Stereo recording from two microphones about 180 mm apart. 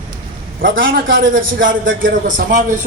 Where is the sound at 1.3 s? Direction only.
50° right (ahead or behind).